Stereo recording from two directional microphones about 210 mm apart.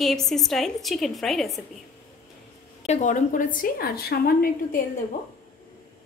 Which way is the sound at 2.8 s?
35° left (ahead or behind).